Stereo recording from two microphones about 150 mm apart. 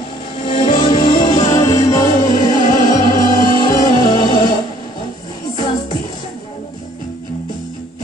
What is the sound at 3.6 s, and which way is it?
Music, 25° left (ahead or behind).